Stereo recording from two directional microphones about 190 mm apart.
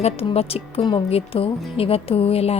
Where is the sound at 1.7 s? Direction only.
30° left (ahead or behind).